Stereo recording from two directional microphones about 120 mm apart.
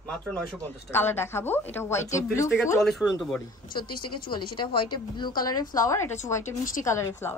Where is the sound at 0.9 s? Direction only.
20° left (ahead or behind).